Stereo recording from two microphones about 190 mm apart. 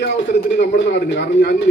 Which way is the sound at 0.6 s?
65° left (ahead or behind).